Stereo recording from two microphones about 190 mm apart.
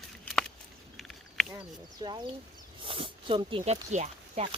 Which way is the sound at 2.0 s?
25° right (ahead or behind).